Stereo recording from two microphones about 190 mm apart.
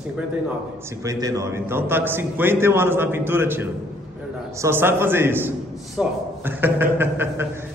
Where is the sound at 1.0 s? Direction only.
15° right (ahead or behind).